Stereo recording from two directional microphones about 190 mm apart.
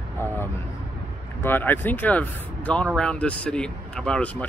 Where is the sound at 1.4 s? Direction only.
10° left (ahead or behind).